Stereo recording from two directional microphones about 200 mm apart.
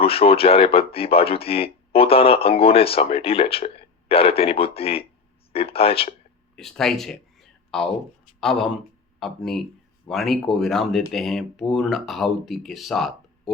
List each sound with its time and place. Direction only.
0.0 s speech: 30° left (ahead or behind)
6.6 s speech: centre (ahead or behind)